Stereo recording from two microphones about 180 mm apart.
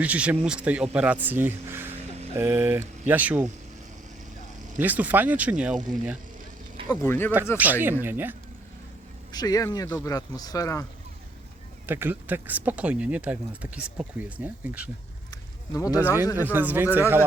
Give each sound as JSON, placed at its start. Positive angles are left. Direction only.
{"t": 0.0, "sound": "speech", "side_deg": -10}
{"t": 4.8, "sound": "speech", "side_deg": -10}
{"t": 6.9, "sound": "speech", "side_deg": 10}
{"t": 7.5, "sound": "speech", "side_deg": -10}
{"t": 9.3, "sound": "speech", "side_deg": 20}
{"t": 11.9, "sound": "speech", "side_deg": -10}
{"t": 15.7, "sound": "speech", "side_deg": 20}
{"t": 16.3, "sound": "speech", "side_deg": -10}